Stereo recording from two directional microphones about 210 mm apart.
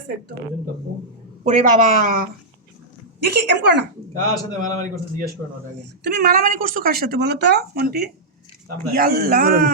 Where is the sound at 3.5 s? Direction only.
55° right (ahead or behind).